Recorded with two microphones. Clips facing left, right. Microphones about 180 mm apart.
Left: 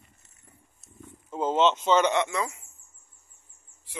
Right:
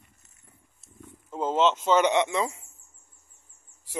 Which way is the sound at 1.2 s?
Centre (ahead or behind).